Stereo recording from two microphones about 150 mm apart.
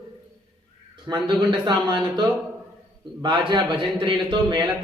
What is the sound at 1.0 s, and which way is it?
A man's voice, 30° right (ahead or behind).